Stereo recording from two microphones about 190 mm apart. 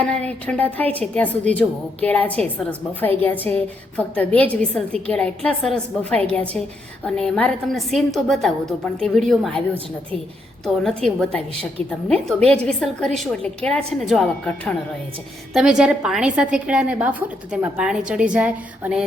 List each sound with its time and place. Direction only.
0.0 s a woman's voice: 5° left (ahead or behind)
10.7 s a woman's voice: centre (ahead or behind)
12.1 s a woman's voice: 30° right (ahead or behind)
12.6 s a woman's voice: 5° left (ahead or behind)